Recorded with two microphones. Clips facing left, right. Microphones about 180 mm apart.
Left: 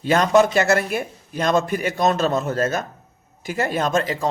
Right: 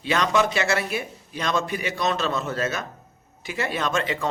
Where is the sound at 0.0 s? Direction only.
45° left (ahead or behind).